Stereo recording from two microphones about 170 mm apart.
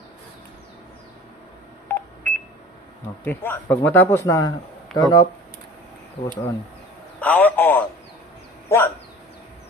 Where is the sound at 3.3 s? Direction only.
10° left (ahead or behind).